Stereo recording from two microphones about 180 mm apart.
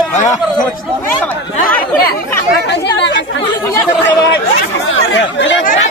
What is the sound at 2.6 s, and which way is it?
Chatter, 70° left (ahead or behind).